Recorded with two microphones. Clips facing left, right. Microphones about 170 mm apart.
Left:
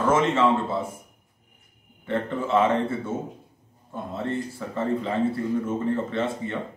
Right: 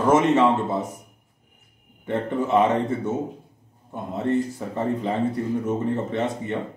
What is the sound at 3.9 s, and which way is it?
Speech, 20° right (ahead or behind).